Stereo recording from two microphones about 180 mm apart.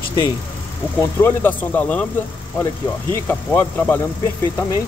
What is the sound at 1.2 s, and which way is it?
Speech, 10° left (ahead or behind).